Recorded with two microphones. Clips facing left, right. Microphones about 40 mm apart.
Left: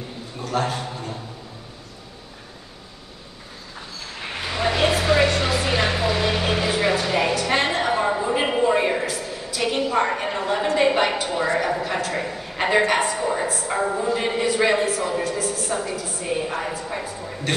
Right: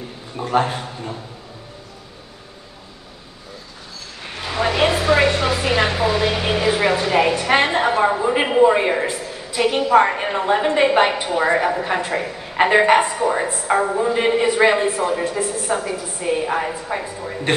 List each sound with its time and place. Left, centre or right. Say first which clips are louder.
0.4 s a man's voice: right 5 dB; right
4.6 s a sound: right 3 dB; centre
11.0 s a man's voice: right 4 dB; right